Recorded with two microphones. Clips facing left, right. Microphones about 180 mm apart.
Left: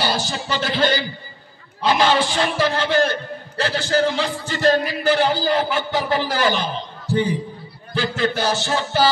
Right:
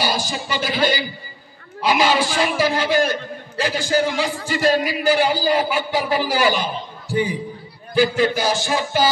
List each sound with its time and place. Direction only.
0.0 s a man's voice: 10° right (ahead or behind)